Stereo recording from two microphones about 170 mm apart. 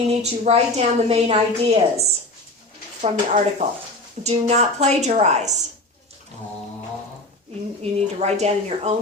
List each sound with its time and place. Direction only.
0.2 s a woman's voice: 40° right (ahead or behind)
7.8 s a woman's voice: 40° right (ahead or behind)